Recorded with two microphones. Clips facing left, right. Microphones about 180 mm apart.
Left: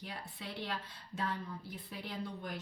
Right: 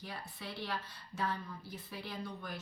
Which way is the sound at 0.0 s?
20° left (ahead or behind).